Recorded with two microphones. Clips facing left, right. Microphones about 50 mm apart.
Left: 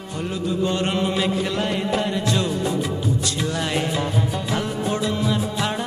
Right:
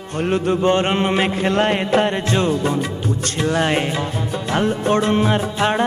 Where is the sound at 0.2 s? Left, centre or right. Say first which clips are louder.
Right 6 dB; right.